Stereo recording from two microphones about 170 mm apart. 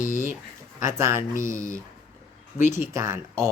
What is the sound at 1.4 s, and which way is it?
Speech, 50° left (ahead or behind).